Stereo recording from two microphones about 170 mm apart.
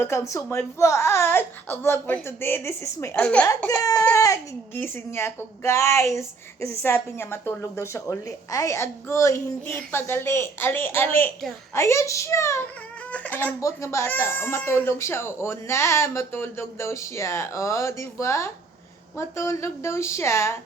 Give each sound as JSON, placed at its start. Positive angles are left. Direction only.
{"t": 0.0, "sound": "speech", "side_deg": 15}
{"t": 3.2, "sound": "speech", "side_deg": 5}
{"t": 3.4, "sound": "speech", "side_deg": 15}